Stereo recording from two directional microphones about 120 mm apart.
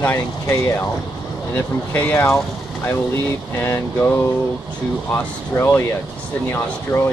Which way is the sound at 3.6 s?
15° left (ahead or behind).